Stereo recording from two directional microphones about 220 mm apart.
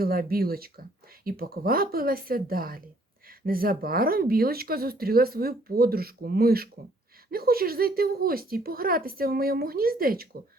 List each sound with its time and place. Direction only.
0.0 s speech: 40° right (ahead or behind)